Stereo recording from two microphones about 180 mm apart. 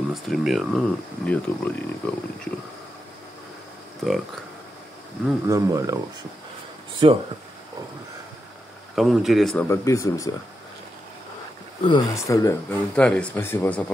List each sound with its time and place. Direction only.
0.1 s speech: centre (ahead or behind)
4.0 s speech: centre (ahead or behind)
5.5 s speech: 20° right (ahead or behind)
7.0 s speech: 30° right (ahead or behind)
8.9 s speech: centre (ahead or behind)
9.7 s speech: 15° left (ahead or behind)
11.8 s speech: 20° left (ahead or behind)